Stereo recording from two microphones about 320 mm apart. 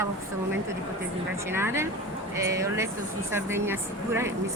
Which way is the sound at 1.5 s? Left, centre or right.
Centre.